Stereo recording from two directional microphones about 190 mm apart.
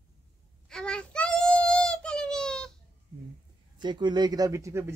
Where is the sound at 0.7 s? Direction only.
5° left (ahead or behind).